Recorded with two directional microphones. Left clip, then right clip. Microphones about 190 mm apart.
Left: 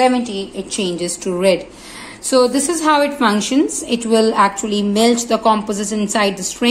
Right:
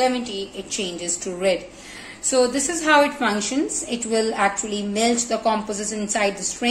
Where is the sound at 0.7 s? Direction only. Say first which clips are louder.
Left 7 dB; 45° left (ahead or behind).